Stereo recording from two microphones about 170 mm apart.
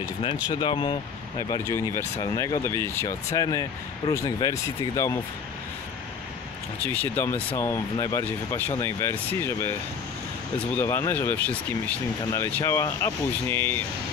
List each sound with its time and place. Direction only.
0.2 s speech: 30° left (ahead or behind)
1.5 s speech: 15° left (ahead or behind)
6.8 s speech: 10° left (ahead or behind)
10.8 s speech: 15° left (ahead or behind)